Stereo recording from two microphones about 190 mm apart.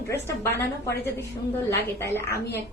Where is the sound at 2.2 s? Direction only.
55° left (ahead or behind).